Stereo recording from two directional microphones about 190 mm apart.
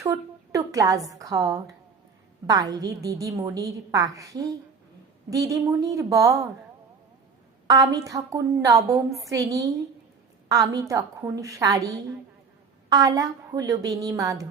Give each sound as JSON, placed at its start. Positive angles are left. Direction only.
{"t": 0.0, "sound": "a woman's voice", "side_deg": -15}
{"t": 7.7, "sound": "a woman's voice", "side_deg": -20}